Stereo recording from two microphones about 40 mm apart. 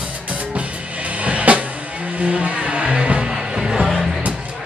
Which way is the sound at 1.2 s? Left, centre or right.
Right.